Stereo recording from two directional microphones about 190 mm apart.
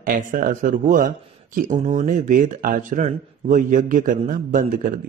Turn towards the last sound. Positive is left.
turn(degrees=-45)  # may be behind; listen again after turning